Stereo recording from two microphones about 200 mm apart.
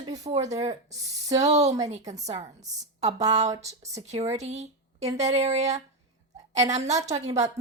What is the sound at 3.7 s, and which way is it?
Speech, 15° right (ahead or behind).